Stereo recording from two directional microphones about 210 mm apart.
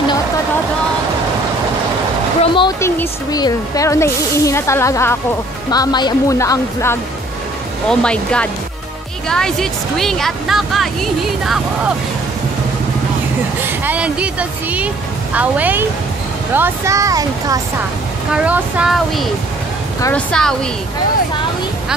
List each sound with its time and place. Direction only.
2.5 s speech: 20° left (ahead or behind); by 10.9 s centre (ahead or behind)
13.7 s speech: 5° right (ahead or behind)
18.3 s speech: 5° right (ahead or behind)
20.0 s speech: 10° left (ahead or behind)